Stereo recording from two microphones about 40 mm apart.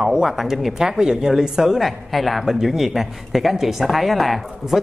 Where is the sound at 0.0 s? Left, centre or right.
Centre.